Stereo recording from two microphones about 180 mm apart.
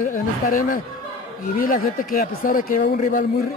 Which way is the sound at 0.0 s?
50° left (ahead or behind).